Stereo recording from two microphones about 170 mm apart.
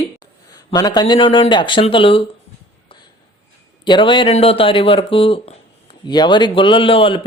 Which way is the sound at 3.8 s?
25° left (ahead or behind).